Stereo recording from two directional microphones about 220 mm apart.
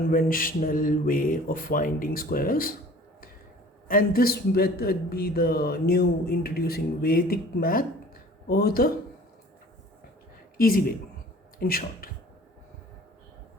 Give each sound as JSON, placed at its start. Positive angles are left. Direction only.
{"t": 0.1, "sound": "speech", "side_deg": 40}
{"t": 3.8, "sound": "a man's voice", "side_deg": 40}
{"t": 10.6, "sound": "a man's voice", "side_deg": 40}